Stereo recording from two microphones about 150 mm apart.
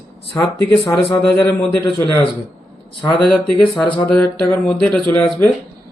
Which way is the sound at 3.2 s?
10° left (ahead or behind).